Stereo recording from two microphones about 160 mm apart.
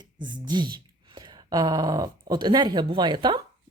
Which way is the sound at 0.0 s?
30° right (ahead or behind).